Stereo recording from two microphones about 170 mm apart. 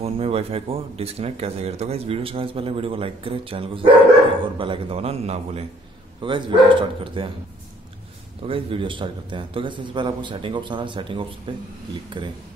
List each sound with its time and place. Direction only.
0.0 s a man's voice: 35° right (ahead or behind)
8.5 s a man's voice: 30° right (ahead or behind)